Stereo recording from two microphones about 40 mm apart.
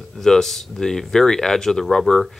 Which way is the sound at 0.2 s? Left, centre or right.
Centre.